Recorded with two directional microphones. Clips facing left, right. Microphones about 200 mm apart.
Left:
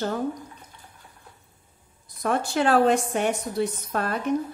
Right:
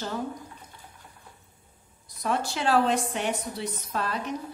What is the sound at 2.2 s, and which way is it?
Speech, 50° left (ahead or behind).